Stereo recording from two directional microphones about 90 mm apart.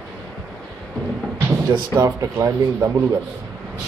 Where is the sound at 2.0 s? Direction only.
35° right (ahead or behind).